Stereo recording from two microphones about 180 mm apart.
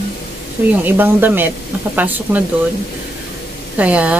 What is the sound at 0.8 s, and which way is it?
Speech, 10° right (ahead or behind).